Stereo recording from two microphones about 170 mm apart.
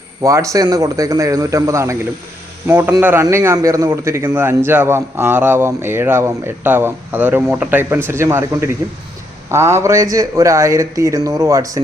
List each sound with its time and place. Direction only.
0.2 s a man's voice: 20° right (ahead or behind)